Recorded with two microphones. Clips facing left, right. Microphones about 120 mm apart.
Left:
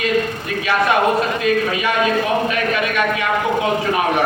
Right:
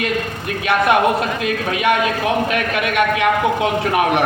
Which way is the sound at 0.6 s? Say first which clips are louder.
Right 2 dB; 60° right (ahead or behind).